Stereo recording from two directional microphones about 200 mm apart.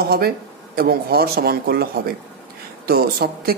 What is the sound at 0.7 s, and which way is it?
Speech, 50° right (ahead or behind).